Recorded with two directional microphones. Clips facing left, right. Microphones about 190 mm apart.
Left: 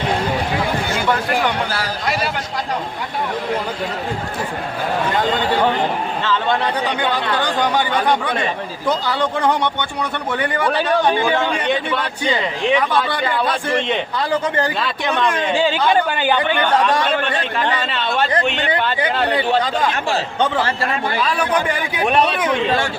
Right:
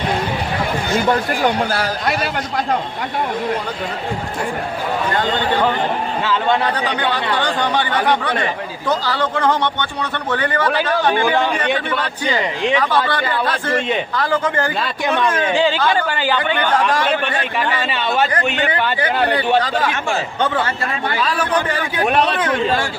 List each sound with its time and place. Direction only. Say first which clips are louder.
1.5 s a man's voice: right 3 dB; 50° right (ahead or behind)
6.7 s speech: even; 10° left (ahead or behind)
12.7 s speech: even; 15° left (ahead or behind)
13.7 s speech: right 1 dB; 5° right (ahead or behind)
14.2 s speech: even; 20° left (ahead or behind)
14.8 s speech: right 1 dB; centre (ahead or behind)
17.6 s speech: right 1 dB; 5° right (ahead or behind)
21.3 s speech: even; 10° left (ahead or behind)